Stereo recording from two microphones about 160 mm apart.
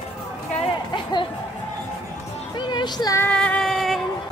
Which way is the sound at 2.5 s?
30° left (ahead or behind).